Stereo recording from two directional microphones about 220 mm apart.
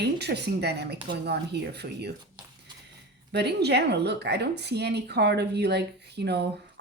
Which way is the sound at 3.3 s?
50° right (ahead or behind).